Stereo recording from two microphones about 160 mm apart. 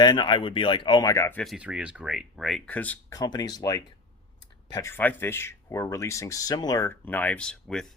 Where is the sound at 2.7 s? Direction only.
10° left (ahead or behind).